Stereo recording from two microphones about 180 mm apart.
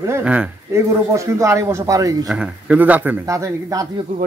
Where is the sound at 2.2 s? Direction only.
5° right (ahead or behind).